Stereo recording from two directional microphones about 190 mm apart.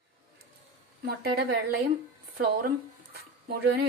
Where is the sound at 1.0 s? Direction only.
55° right (ahead or behind).